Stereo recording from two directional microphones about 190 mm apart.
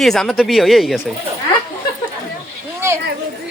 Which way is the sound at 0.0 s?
Centre (ahead or behind).